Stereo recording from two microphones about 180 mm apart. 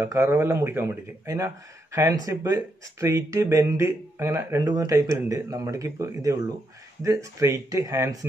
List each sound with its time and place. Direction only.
0.0 s speech: 15° right (ahead or behind)